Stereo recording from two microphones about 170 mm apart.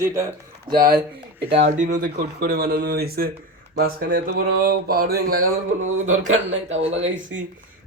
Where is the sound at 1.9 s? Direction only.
60° right (ahead or behind).